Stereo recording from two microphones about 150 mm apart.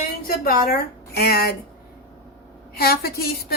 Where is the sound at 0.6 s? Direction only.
90° left.